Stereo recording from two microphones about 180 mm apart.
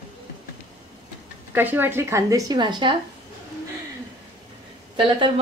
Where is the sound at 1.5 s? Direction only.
10° right (ahead or behind).